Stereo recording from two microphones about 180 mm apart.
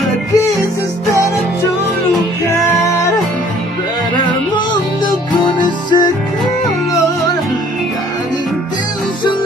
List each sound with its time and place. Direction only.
5.0 s music: 25° left (ahead or behind)